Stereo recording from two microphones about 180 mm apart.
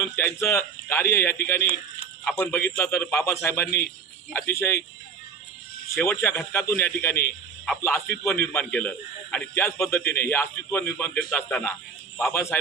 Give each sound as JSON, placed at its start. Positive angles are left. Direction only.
{"t": 0.0, "sound": "a man's voice", "side_deg": 15}
{"t": 5.9, "sound": "a man's voice", "side_deg": 15}